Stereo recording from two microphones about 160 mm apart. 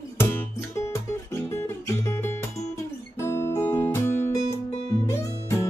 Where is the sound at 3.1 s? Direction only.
15° left (ahead or behind).